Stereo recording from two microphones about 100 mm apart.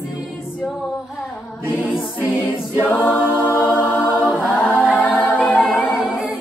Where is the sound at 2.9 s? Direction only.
20° left (ahead or behind).